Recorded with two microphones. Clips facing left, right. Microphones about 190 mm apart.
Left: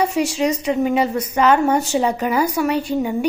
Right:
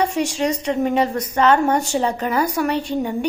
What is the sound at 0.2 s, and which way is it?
A woman's voice, 5° left (ahead or behind).